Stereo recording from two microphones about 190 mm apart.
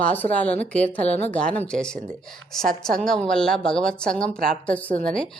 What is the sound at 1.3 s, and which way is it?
Speech, 5° left (ahead or behind).